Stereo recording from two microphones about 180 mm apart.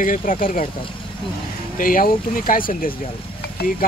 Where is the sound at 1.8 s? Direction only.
50° left (ahead or behind).